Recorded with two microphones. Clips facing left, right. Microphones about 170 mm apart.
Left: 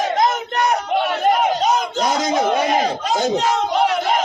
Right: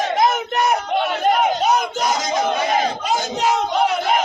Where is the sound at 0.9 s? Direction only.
5° left (ahead or behind).